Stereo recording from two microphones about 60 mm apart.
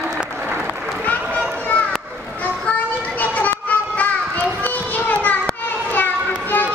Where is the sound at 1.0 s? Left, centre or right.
Left.